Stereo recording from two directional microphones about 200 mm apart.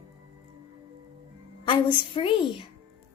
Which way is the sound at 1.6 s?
25° left (ahead or behind).